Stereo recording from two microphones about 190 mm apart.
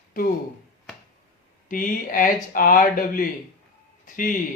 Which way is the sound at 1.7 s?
45° left (ahead or behind).